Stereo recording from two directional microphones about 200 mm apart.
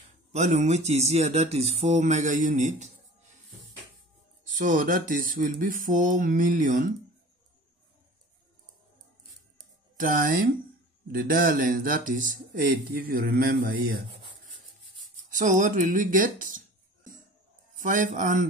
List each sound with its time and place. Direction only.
0.3 s speech: 35° right (ahead or behind)
4.6 s speech: 40° right (ahead or behind)
9.9 s speech: 40° right (ahead or behind)
15.3 s speech: 40° right (ahead or behind)